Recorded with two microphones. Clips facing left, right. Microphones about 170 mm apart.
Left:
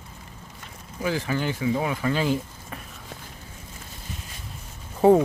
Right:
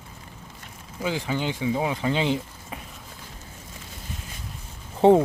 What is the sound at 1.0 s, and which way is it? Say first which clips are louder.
Speech: left 1 dB; 20° right (ahead or behind).